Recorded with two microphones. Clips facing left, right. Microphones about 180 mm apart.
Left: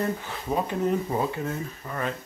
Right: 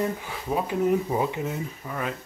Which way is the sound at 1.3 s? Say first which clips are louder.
Right 1 dB; 15° right (ahead or behind).